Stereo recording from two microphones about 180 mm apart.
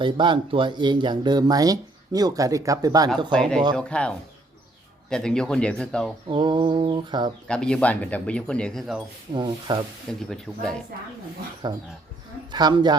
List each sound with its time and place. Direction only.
0.0 s speech: 25° right (ahead or behind)
3.3 s speech: 5° left (ahead or behind)
6.2 s speech: 25° right (ahead or behind)
7.4 s speech: 5° left (ahead or behind)
9.3 s speech: 25° right (ahead or behind)
10.1 s speech: centre (ahead or behind)
11.6 s speech: 25° right (ahead or behind)